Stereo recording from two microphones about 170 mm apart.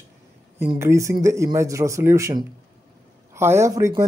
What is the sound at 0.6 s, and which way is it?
Speech, 15° right (ahead or behind).